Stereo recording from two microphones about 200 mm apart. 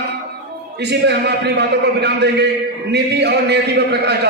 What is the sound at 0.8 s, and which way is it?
A man's voice, 55° right (ahead or behind).